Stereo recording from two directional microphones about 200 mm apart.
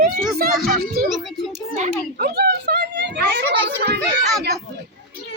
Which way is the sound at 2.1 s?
50° right (ahead or behind).